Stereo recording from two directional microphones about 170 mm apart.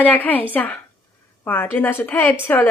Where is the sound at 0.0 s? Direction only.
10° left (ahead or behind).